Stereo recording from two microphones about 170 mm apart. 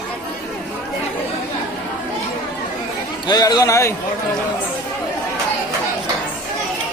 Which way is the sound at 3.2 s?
25° left (ahead or behind).